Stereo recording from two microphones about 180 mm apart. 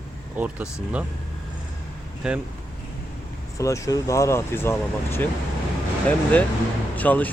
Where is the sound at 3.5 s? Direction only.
15° left (ahead or behind).